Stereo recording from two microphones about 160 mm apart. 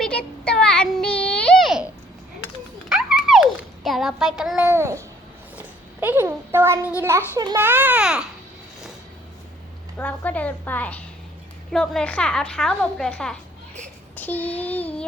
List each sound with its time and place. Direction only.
0.0 s child singing: 5° left (ahead or behind)
2.9 s a sound: 5° right (ahead or behind)
7.0 s speech: 15° right (ahead or behind)
10.0 s a woman's voice: 10° left (ahead or behind)